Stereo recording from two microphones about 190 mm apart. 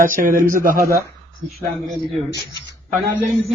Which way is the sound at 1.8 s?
Centre (ahead or behind).